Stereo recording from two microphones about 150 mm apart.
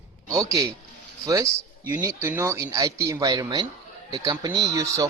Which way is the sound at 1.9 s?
15° right (ahead or behind).